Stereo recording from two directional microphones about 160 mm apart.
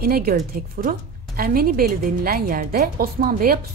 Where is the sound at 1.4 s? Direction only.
65° right (ahead or behind).